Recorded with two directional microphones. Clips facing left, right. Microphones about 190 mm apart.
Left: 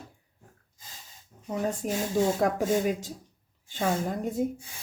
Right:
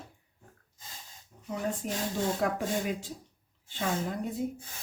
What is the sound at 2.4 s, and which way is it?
Speech, 45° left (ahead or behind).